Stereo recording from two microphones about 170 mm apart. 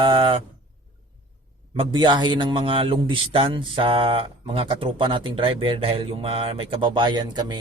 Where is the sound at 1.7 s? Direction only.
30° right (ahead or behind).